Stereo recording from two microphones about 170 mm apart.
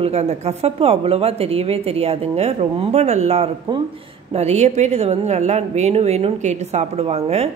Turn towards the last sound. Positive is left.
turn(degrees=-40)  # may be behind; listen again after turning